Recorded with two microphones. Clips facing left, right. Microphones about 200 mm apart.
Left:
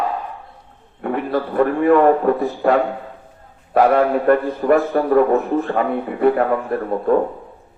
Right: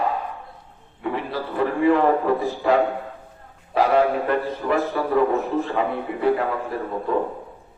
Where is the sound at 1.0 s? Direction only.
55° left (ahead or behind).